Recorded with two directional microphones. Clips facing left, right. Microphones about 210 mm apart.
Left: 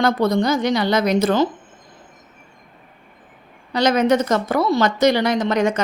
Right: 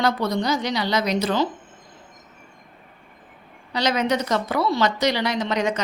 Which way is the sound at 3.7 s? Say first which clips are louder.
Left 6 dB; 50° left (ahead or behind).